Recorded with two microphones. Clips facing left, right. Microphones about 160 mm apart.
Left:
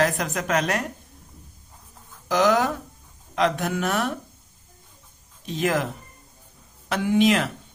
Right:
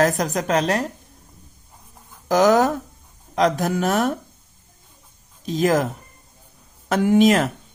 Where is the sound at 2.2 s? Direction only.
45° right (ahead or behind).